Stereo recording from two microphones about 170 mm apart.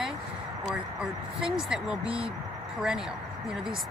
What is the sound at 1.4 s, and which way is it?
Speech, 5° right (ahead or behind).